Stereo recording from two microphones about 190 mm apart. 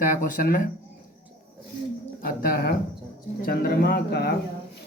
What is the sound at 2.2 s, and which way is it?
Speech, 50° left (ahead or behind).